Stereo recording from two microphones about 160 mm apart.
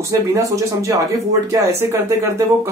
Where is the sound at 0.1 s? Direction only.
20° right (ahead or behind).